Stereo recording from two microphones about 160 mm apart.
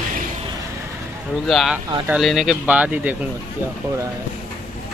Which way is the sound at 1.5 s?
Centre (ahead or behind).